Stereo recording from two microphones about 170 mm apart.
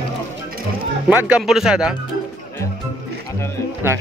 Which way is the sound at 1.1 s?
10° right (ahead or behind).